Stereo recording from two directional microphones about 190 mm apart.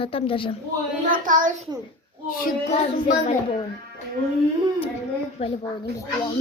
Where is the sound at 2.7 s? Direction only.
35° left (ahead or behind).